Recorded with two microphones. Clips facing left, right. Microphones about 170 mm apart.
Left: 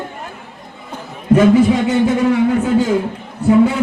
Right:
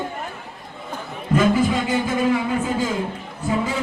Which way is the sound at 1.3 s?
70° left (ahead or behind).